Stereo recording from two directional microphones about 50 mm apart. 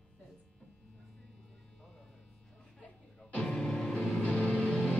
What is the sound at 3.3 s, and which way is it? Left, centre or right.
Music, centre.